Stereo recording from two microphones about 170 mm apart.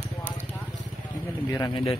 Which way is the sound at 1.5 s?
20° left (ahead or behind).